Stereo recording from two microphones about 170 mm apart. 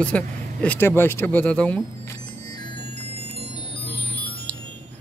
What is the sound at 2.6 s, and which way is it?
Music, 30° left (ahead or behind).